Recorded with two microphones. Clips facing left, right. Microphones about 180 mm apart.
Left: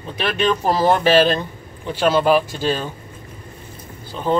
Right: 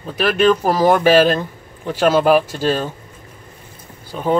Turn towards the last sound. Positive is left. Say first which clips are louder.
# right 2 dB
turn(degrees=-5)  # may be behind; listen again after turning